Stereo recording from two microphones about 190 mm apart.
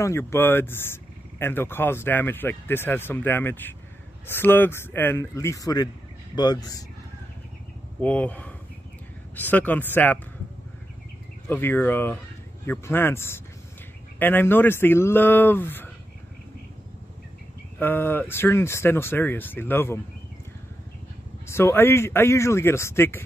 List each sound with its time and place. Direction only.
0.0 s speech: 15° left (ahead or behind)
8.0 s speech: 5° left (ahead or behind)
11.4 s speech: 10° left (ahead or behind)
17.7 s speech: 10° left (ahead or behind)
21.5 s speech: 15° left (ahead or behind)